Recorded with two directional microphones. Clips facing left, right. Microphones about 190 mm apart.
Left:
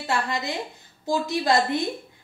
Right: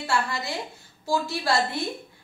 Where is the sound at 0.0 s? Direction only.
20° left (ahead or behind).